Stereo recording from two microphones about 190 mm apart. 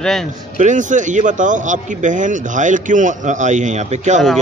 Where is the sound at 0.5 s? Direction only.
40° right (ahead or behind).